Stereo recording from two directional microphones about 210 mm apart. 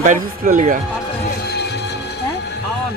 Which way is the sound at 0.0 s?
35° right (ahead or behind).